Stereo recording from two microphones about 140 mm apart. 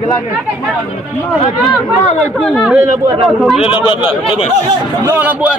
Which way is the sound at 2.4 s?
5° left (ahead or behind).